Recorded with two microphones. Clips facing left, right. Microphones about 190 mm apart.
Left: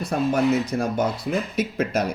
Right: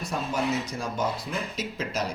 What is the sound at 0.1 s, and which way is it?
Speech, 60° left (ahead or behind).